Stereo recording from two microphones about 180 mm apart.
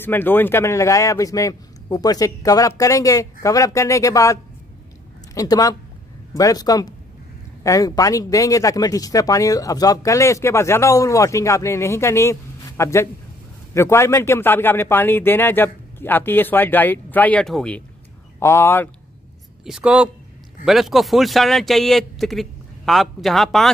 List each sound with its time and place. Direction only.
0.0 s speech: 10° left (ahead or behind)
19.6 s a man's voice: 5° right (ahead or behind)